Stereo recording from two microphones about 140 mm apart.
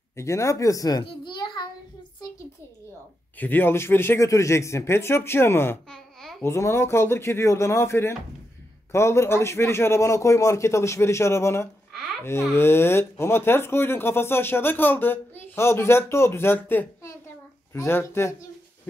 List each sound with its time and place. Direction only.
0.1 s a child's voice: 20° left (ahead or behind)
3.3 s speech: 15° left (ahead or behind)
5.9 s babbling: 5° left (ahead or behind)
6.4 s a man's voice: 20° left (ahead or behind)